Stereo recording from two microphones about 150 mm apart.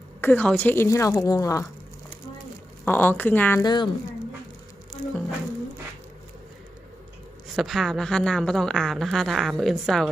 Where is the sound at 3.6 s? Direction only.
30° left (ahead or behind).